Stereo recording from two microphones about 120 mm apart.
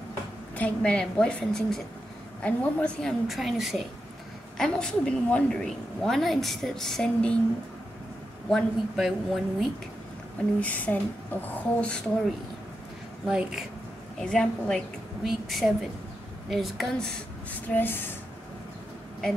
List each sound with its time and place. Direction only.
0.6 s a woman's voice: 10° left (ahead or behind)
8.5 s a woman's voice: centre (ahead or behind)
10.6 s a woman's voice: 15° left (ahead or behind)
13.3 s speech: 5° right (ahead or behind)
14.2 s a woman's voice: 5° left (ahead or behind)
17.5 s a woman's voice: 15° left (ahead or behind)